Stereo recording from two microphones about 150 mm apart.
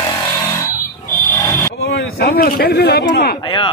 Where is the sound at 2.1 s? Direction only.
90° left.